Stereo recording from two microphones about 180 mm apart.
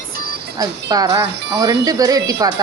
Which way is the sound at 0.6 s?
20° right (ahead or behind).